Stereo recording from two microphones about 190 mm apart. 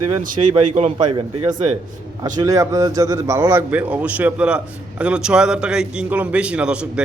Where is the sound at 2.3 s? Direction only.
20° right (ahead or behind).